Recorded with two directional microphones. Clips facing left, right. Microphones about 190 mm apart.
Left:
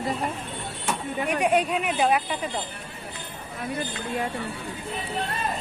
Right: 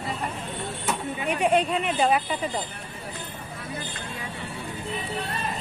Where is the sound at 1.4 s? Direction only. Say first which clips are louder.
Right 1 dB; 5° left (ahead or behind).